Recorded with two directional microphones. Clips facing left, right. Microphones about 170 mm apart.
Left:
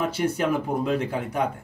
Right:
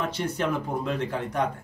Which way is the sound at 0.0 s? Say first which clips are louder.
Left 4 dB; 10° left (ahead or behind).